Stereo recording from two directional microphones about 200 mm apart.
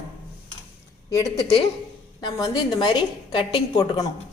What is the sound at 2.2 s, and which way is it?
A woman's voice, 15° left (ahead or behind).